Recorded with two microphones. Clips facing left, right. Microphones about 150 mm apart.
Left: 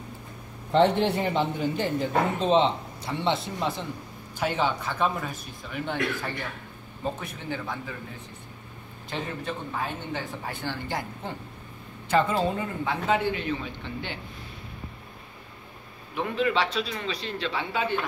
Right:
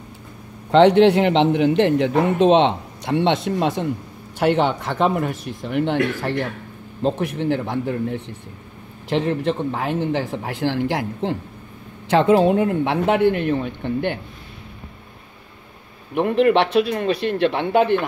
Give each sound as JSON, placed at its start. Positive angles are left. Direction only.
{"t": 0.7, "sound": "a man's voice", "side_deg": -85}
{"t": 16.2, "sound": "speech", "side_deg": -60}